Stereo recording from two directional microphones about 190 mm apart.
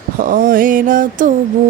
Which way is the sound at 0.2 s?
45° right (ahead or behind).